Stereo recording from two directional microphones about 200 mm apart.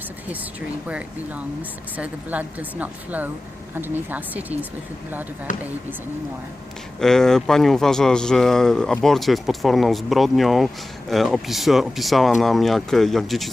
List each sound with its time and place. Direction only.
0.9 s speech: 5° right (ahead or behind)
5.5 s speech: 40° left (ahead or behind)
7.0 s speech: centre (ahead or behind)